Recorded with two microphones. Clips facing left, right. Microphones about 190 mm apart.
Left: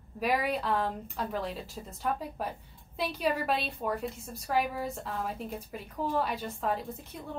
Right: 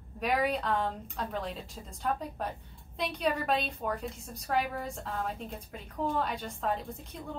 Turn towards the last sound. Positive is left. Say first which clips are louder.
# left 1 dB
turn(degrees=0)  # may be behind; listen again after turning